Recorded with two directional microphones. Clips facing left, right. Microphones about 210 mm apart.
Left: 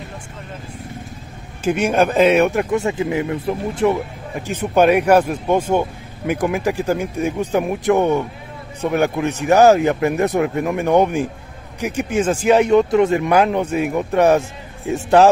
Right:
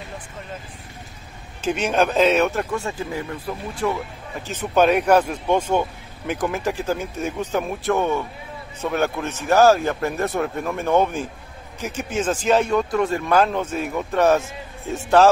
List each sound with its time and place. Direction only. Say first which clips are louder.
1.6 s speech: left 4 dB; 10° left (ahead or behind)